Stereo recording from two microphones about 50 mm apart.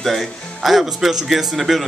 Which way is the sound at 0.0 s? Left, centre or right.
Centre.